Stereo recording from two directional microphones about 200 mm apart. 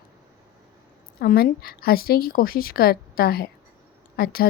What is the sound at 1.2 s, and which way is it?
Speech, 50° left (ahead or behind).